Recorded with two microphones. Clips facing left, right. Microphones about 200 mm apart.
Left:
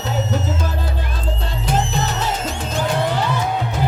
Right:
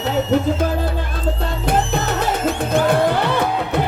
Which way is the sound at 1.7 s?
55° right (ahead or behind).